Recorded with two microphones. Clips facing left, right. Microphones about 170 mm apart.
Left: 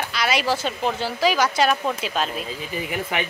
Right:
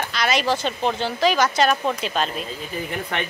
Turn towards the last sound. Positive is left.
turn(degrees=5)  # may be behind; listen again after turning